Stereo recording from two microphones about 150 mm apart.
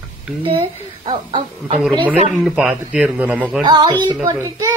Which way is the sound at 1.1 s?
35° right (ahead or behind).